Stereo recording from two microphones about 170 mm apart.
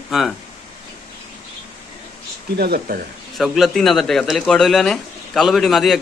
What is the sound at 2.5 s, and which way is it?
Speech, 65° right (ahead or behind).